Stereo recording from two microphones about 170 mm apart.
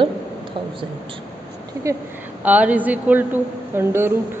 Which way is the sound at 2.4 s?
10° right (ahead or behind).